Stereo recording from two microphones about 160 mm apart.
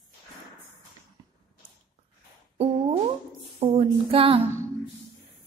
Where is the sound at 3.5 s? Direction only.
40° right (ahead or behind).